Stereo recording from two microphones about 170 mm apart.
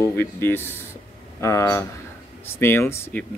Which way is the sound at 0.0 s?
15° left (ahead or behind).